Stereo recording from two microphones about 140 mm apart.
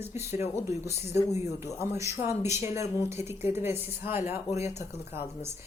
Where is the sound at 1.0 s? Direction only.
50° left (ahead or behind).